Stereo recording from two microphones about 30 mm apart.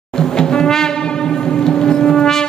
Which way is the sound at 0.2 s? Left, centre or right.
Left.